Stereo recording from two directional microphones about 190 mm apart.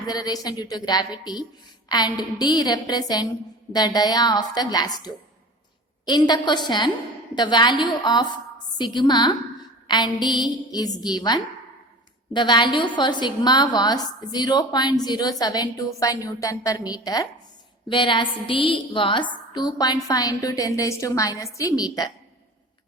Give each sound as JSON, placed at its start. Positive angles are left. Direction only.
{"t": 0.1, "sound": "a woman's voice", "side_deg": 20}